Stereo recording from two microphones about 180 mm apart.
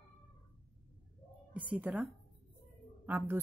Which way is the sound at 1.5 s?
10° right (ahead or behind).